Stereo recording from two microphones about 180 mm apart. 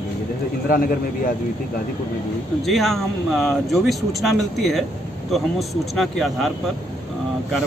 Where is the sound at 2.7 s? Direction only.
Centre (ahead or behind).